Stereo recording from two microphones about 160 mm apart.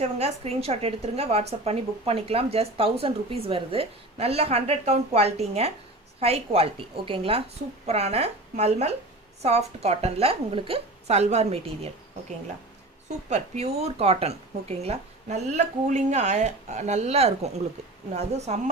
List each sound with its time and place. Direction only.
0.0 s a woman's voice: 40° right (ahead or behind)
13.1 s a woman's voice: 45° right (ahead or behind)